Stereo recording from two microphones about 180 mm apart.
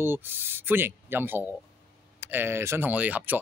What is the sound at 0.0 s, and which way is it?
Speech, 10° right (ahead or behind).